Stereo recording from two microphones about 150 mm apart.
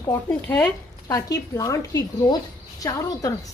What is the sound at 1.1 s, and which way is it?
A woman's voice, 20° left (ahead or behind).